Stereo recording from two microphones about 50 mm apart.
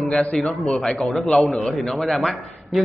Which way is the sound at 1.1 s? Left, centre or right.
Centre.